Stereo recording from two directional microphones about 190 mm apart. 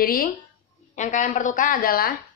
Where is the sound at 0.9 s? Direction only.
40° left (ahead or behind).